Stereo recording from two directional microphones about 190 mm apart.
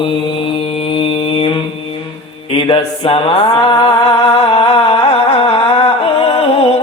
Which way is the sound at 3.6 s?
30° left (ahead or behind).